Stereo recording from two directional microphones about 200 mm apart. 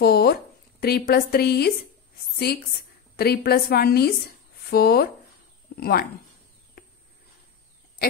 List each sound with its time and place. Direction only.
0.0 s a woman's voice: 50° left (ahead or behind)